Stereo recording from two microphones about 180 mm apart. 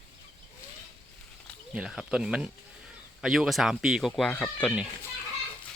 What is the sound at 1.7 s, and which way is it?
Speech, 5° right (ahead or behind).